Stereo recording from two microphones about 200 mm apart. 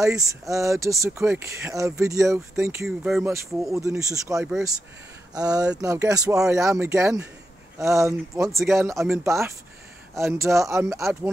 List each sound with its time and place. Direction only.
0.0 s speech: 15° right (ahead or behind)
4.4 s speech: centre (ahead or behind)
5.3 s speech: 20° right (ahead or behind)